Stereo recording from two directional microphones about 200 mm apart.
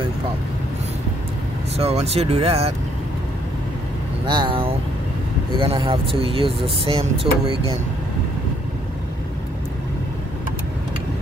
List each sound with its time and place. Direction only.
1.8 s speech: 30° right (ahead or behind)
4.3 s speech: 25° right (ahead or behind)